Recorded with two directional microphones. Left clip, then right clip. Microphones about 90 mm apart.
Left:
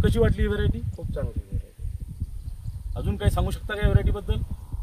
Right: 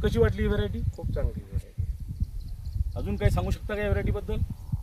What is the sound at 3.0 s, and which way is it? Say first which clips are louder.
Speech: left 1 dB; 20° left (ahead or behind).